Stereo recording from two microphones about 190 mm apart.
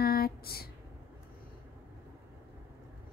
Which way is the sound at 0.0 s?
55° left (ahead or behind).